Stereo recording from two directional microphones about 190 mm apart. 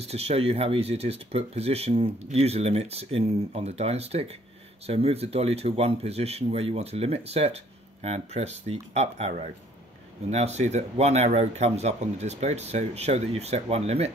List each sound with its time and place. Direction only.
0.0 s speech: 35° right (ahead or behind)
10.3 s speech: 35° right (ahead or behind)